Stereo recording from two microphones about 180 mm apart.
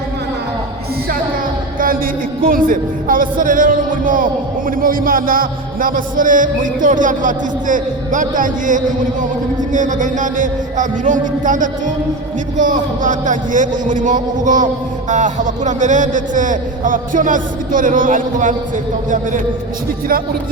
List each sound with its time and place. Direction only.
2.4 s a man's voice: 50° right (ahead or behind)